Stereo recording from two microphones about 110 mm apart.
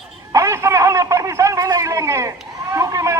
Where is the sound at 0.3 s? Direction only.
25° right (ahead or behind).